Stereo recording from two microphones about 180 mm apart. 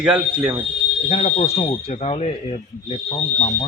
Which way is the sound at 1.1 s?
35° left (ahead or behind).